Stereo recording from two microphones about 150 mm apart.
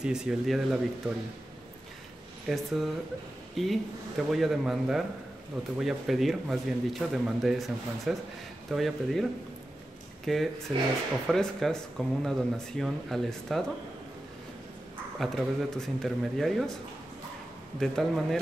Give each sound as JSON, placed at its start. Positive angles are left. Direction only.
{"t": 0.0, "sound": "speech", "side_deg": -5}
{"t": 2.5, "sound": "speech", "side_deg": 0}
{"t": 15.1, "sound": "speech", "side_deg": 0}
{"t": 17.7, "sound": "speech", "side_deg": 0}